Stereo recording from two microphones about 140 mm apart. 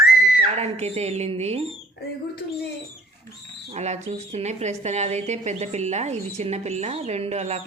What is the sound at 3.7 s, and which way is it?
Speech, 55° right (ahead or behind).